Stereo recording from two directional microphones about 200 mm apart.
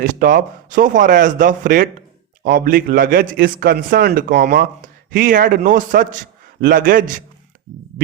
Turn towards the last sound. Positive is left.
turn(degrees=-45)  # may be behind; listen again after turning